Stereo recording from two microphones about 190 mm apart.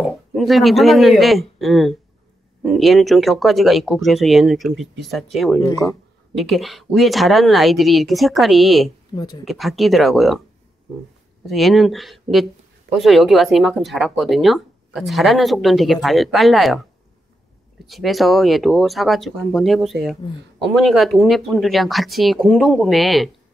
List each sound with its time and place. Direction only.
0.4 s speech: centre (ahead or behind)
5.6 s speech: 20° left (ahead or behind)
6.3 s speech: centre (ahead or behind)
9.1 s speech: 20° left (ahead or behind)
9.4 s speech: centre (ahead or behind)
11.4 s speech: centre (ahead or behind)
17.8 s speech: centre (ahead or behind)